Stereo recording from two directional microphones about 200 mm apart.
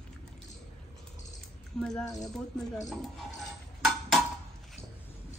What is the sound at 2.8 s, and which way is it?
Dishes, centre (ahead or behind).